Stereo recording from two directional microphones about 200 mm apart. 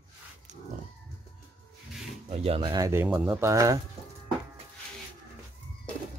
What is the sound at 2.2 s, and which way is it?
Speech, 30° right (ahead or behind).